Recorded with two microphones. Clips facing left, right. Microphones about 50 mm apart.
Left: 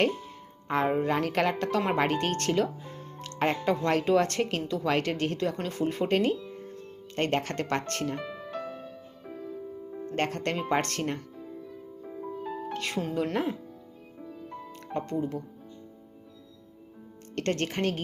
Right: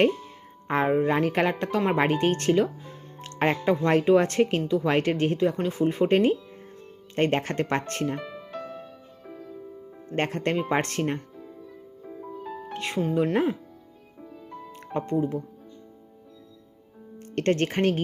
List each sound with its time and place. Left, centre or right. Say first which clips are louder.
0.9 s speech: right 6 dB; centre
3.2 s music: right 3 dB; right
3.6 s speech: right 4 dB; centre
5.4 s speech: right 5 dB; centre
8.1 s music: right 1 dB; centre
10.2 s speech: right 4 dB; right
12.0 s music: left 1 dB; centre
12.7 s speech: right 6 dB; centre
14.2 s music: even; centre
14.9 s speech: right 5 dB; right
17.3 s speech: right 5 dB; right